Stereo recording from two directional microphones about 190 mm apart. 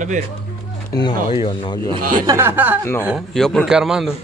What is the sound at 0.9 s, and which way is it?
Speech, 25° left (ahead or behind).